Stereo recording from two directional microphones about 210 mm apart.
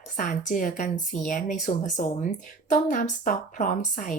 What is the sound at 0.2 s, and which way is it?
Speech, 40° left (ahead or behind).